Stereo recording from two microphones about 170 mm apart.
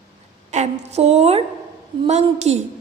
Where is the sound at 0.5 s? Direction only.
40° right (ahead or behind).